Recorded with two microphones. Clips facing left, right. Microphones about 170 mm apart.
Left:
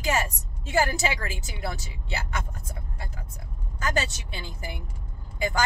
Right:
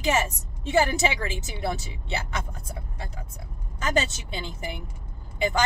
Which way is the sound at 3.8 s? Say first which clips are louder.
Right 3 dB; 25° right (ahead or behind).